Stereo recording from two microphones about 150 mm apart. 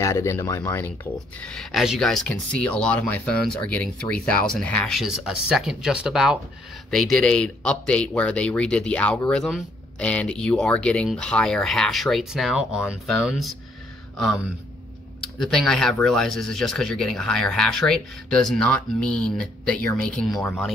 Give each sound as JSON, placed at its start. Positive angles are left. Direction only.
{"t": 0.0, "sound": "speech", "side_deg": 20}
{"t": 1.4, "sound": "speech", "side_deg": 5}
{"t": 15.3, "sound": "speech", "side_deg": 0}